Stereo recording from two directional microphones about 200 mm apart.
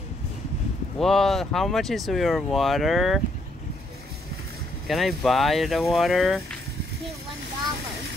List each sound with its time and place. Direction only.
0.9 s speech: centre (ahead or behind)
4.8 s speech: centre (ahead or behind)